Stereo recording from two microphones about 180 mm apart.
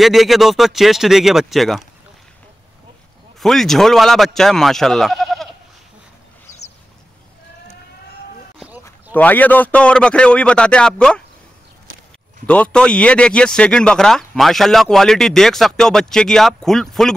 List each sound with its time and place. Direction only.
0.0 s speech: centre (ahead or behind)
3.3 s speech: centre (ahead or behind)
9.1 s speech: 10° left (ahead or behind)
12.4 s speech: 5° left (ahead or behind)